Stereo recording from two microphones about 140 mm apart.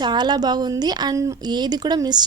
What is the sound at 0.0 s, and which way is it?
Speech, 30° right (ahead or behind).